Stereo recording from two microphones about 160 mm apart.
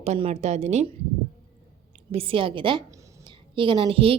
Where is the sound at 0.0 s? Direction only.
40° right (ahead or behind).